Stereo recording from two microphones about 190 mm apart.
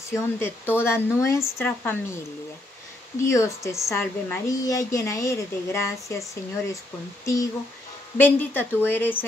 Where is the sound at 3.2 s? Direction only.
15° left (ahead or behind).